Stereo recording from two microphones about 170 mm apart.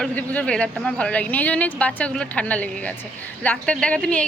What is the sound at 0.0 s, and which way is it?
A woman's voice, 10° left (ahead or behind).